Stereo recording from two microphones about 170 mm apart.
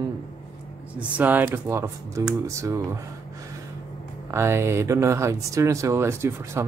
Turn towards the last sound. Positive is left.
turn(degrees=-15)  # may be behind; listen again after turning